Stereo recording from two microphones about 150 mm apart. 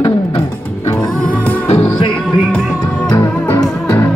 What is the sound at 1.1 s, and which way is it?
Music, 10° left (ahead or behind).